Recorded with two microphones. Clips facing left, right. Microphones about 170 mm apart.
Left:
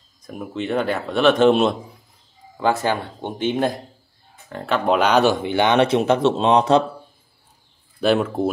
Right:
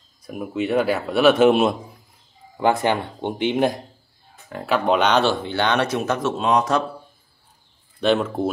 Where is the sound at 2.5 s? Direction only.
15° right (ahead or behind).